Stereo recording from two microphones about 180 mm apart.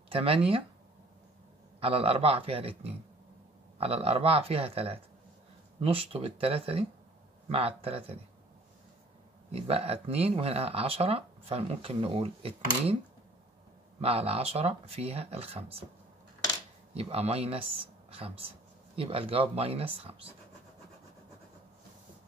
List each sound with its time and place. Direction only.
0.1 s speech: 30° right (ahead or behind)
1.8 s speech: 30° right (ahead or behind)
9.5 s speech: 35° right (ahead or behind)
14.0 s speech: 30° right (ahead or behind)
16.9 s speech: 35° right (ahead or behind)